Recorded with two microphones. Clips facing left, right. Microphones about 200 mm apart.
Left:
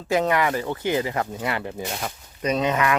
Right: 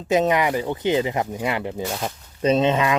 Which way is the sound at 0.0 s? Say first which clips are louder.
Right 2 dB; 20° right (ahead or behind).